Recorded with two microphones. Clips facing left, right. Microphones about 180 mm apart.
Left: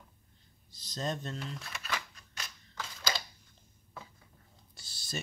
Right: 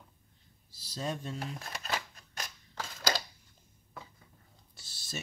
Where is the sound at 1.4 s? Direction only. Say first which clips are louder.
Right 2 dB; 50° right (ahead or behind).